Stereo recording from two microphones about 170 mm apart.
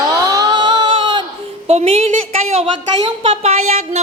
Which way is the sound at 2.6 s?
30° right (ahead or behind).